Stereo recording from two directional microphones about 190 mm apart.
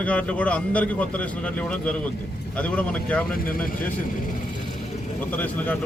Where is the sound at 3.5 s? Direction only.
45° left (ahead or behind).